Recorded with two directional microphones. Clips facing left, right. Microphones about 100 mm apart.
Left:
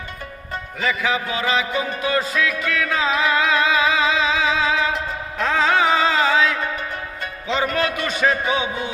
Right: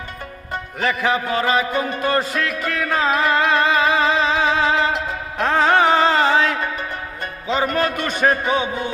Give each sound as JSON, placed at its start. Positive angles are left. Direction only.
{"t": 0.8, "sound": "music", "side_deg": -50}
{"t": 7.7, "sound": "a man's voice", "side_deg": -45}